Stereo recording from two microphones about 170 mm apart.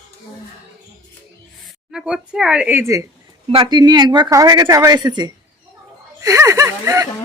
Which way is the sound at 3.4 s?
30° right (ahead or behind).